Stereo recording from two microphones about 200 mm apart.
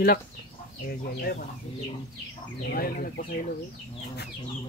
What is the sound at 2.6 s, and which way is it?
Speech, 45° left (ahead or behind).